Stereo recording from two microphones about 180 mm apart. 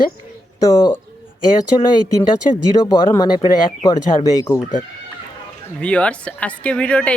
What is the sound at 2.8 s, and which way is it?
Speech, 20° left (ahead or behind).